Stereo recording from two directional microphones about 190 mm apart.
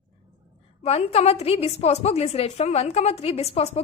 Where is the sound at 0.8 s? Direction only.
35° left (ahead or behind).